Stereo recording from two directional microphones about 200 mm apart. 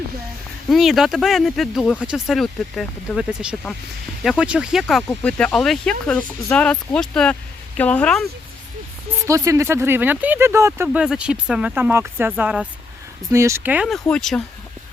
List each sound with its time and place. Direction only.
0.7 s speech: centre (ahead or behind)
9.2 s speech: 15° right (ahead or behind)
10.8 s speech: centre (ahead or behind)